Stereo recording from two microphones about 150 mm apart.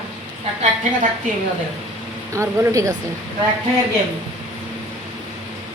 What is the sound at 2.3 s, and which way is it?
Speech, 20° right (ahead or behind).